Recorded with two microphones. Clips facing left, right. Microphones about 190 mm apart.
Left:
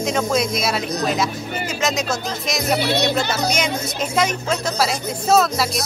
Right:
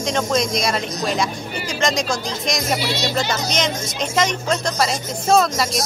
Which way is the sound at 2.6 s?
60° left (ahead or behind).